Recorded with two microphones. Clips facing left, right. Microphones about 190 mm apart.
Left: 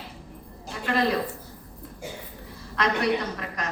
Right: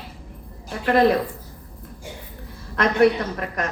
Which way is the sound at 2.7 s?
55° right (ahead or behind).